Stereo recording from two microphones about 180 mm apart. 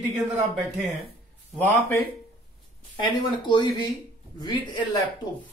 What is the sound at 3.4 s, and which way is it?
Speech, 25° left (ahead or behind).